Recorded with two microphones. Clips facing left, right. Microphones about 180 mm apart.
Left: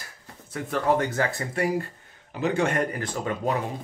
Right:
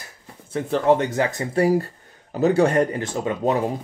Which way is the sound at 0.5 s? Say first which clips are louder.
Right 6 dB; 30° right (ahead or behind).